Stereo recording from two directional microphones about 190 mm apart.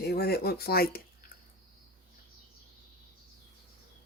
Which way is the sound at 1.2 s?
55° left (ahead or behind).